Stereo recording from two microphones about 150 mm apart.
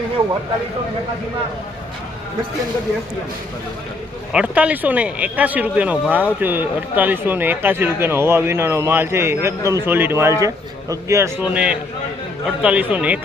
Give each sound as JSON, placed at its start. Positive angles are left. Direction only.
{"t": 4.3, "sound": "speech", "side_deg": -5}